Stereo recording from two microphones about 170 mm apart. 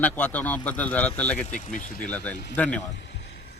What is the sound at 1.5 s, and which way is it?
Speech, 50° left (ahead or behind).